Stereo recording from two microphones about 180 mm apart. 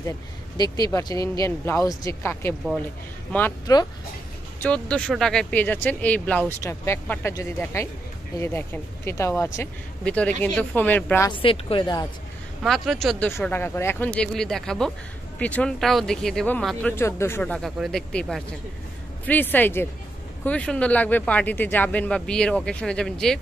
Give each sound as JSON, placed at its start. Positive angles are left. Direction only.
{"t": 0.6, "sound": "speech", "side_deg": 20}
{"t": 11.2, "sound": "speech", "side_deg": 30}
{"t": 12.6, "sound": "speech", "side_deg": 0}